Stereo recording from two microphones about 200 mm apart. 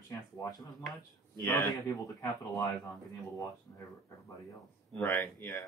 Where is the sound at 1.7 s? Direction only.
20° left (ahead or behind).